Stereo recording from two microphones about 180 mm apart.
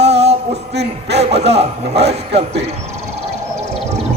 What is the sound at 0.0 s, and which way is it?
Music, 35° right (ahead or behind).